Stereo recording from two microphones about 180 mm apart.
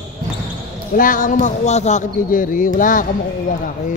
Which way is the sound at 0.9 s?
50° left (ahead or behind).